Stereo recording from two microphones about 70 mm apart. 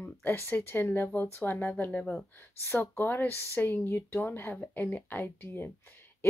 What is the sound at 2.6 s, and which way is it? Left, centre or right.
Speech, left.